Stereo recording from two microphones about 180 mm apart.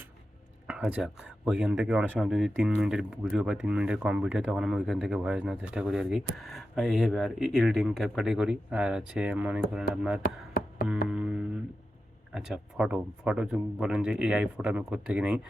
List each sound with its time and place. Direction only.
0.7 s speech: 5° right (ahead or behind)
10.2 s a sound: 55° left (ahead or behind)
10.8 s speech: 5° right (ahead or behind)